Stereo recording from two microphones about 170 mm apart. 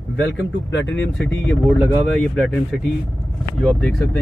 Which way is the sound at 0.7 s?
90° left.